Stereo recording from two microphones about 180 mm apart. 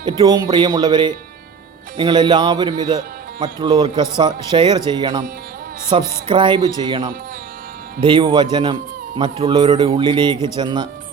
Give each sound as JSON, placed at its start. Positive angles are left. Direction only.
{"t": 0.0, "sound": "a man's voice", "side_deg": -20}